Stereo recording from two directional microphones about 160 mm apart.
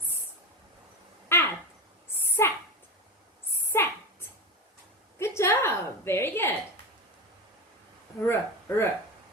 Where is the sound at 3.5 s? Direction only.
15° left (ahead or behind).